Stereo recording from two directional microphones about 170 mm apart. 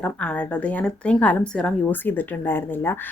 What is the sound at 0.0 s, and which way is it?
A woman's voice, 5° left (ahead or behind).